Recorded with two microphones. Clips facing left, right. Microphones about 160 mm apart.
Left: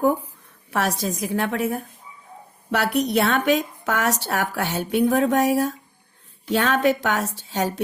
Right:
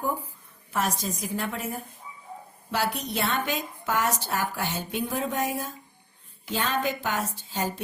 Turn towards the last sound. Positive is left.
turn(degrees=70)  # may be behind; listen again after turning